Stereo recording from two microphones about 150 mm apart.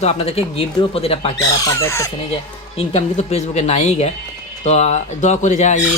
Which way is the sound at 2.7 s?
45° left (ahead or behind).